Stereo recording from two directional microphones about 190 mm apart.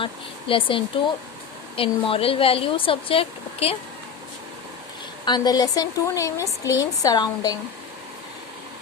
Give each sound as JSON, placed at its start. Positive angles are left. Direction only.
{"t": 0.0, "sound": "a woman's voice", "side_deg": 25}
{"t": 5.2, "sound": "a woman's voice", "side_deg": 20}